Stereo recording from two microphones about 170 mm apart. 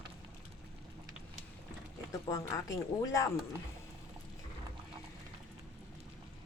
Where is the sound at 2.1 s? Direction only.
20° left (ahead or behind).